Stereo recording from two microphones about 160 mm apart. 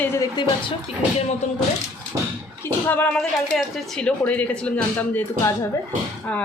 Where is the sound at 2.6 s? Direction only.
10° left (ahead or behind).